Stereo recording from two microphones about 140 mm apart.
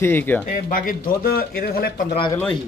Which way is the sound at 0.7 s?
85° left.